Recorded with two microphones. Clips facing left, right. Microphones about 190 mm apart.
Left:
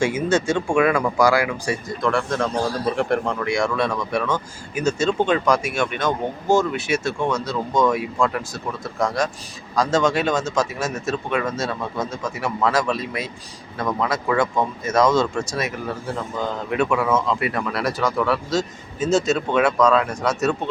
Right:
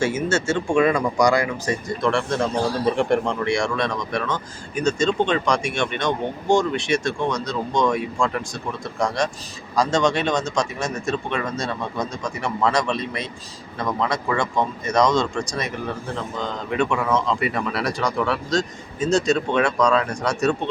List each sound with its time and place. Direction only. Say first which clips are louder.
0.0 s speech: left 2 dB; 15° left (ahead or behind)